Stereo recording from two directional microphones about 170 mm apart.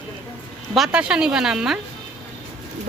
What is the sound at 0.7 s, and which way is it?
A woman's voice, 5° right (ahead or behind).